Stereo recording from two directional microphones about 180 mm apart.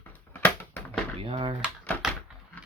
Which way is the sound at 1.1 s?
30° right (ahead or behind).